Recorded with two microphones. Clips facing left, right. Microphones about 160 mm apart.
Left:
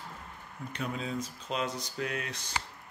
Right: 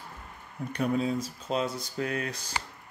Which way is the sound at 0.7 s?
40° right (ahead or behind).